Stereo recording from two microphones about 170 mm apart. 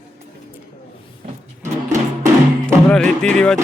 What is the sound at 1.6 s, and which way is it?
Music, 45° right (ahead or behind).